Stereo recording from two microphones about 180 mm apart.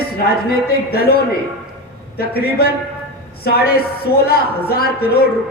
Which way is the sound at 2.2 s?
60° left (ahead or behind).